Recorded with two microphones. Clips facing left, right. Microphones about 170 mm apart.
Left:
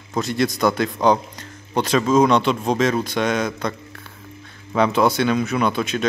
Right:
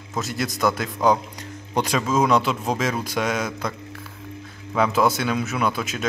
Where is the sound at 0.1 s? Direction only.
5° right (ahead or behind).